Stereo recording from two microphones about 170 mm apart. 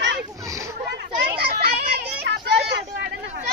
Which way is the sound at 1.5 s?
65° right (ahead or behind).